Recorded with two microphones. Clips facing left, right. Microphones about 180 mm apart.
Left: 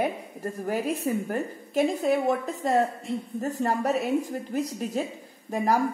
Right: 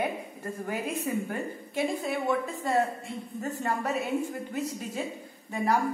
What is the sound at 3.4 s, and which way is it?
A woman's voice, 35° left (ahead or behind).